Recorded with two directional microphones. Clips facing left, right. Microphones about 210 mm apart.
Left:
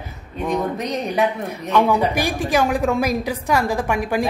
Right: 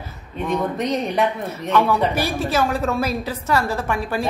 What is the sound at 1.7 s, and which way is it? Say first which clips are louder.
A woman's voice: left 1 dB; 15° left (ahead or behind).